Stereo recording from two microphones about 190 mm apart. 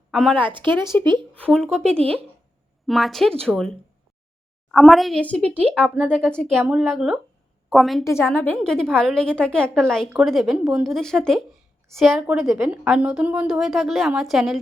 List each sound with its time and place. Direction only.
0.1 s speech: centre (ahead or behind)
0.3 s speech: 25° right (ahead or behind)
1.3 s a woman's voice: 5° left (ahead or behind)
1.8 s speech: 30° right (ahead or behind)
2.8 s a woman's voice: centre (ahead or behind)
4.7 s a woman's voice: centre (ahead or behind)
5.6 s a woman's voice: 5° right (ahead or behind)
8.0 s a woman's voice: 15° left (ahead or behind)